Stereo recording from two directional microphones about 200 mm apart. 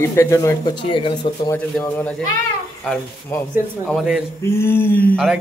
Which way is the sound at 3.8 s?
Centre (ahead or behind).